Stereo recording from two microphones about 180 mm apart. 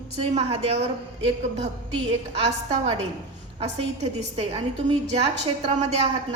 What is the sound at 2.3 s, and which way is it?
A woman's voice, 40° right (ahead or behind).